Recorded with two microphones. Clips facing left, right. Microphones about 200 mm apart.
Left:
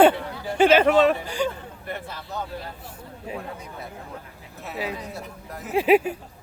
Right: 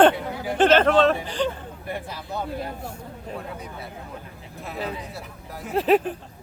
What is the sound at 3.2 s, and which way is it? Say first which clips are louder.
Speech: left 1 dB; centre (ahead or behind).